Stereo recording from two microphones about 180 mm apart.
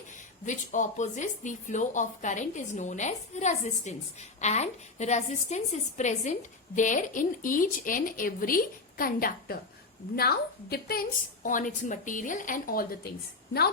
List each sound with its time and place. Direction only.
0.2 s a woman's voice: 45° left (ahead or behind)
11.4 s a woman's voice: 45° left (ahead or behind)